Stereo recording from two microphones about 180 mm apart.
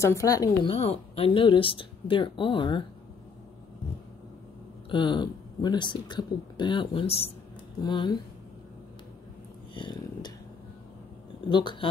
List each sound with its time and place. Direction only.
0.0 s speech: 15° left (ahead or behind)
0.7 s speech: 35° left (ahead or behind)
4.8 s speech: 25° left (ahead or behind)
9.8 s a sound: 25° left (ahead or behind)
11.4 s speech: 25° left (ahead or behind)